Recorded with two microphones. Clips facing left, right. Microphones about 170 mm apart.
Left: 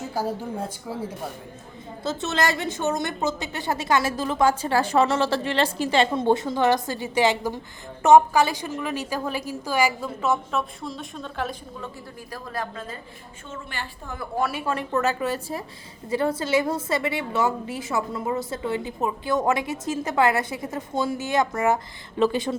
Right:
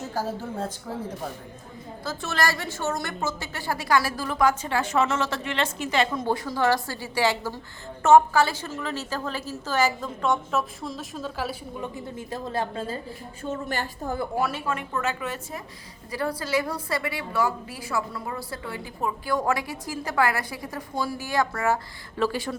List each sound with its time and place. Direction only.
0.1 s a woman's voice: 10° left (ahead or behind)
2.0 s a woman's voice: 20° left (ahead or behind); by 11.5 s 5° right (ahead or behind)
11.8 s a woman's voice: 20° right (ahead or behind)
13.4 s a woman's voice: 40° right (ahead or behind)
14.7 s a woman's voice: 35° left (ahead or behind)
16.0 s a woman's voice: 25° left (ahead or behind)